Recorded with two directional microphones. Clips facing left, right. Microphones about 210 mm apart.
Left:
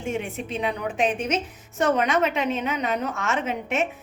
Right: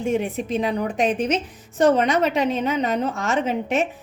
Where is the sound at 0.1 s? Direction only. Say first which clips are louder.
Right 5 dB; 40° right (ahead or behind).